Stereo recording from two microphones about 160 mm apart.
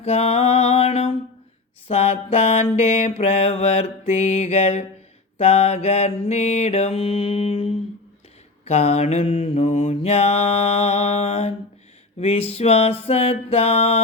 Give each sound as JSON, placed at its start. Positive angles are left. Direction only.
{"t": 0.0, "sound": "music", "side_deg": 40}
{"t": 1.9, "sound": "mantra", "side_deg": 40}
{"t": 9.6, "sound": "mantra", "side_deg": 50}